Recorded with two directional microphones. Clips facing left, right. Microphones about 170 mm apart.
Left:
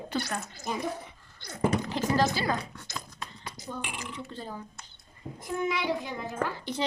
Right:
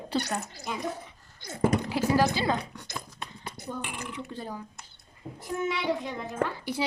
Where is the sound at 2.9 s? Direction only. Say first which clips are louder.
Right 1 dB; 20° right (ahead or behind).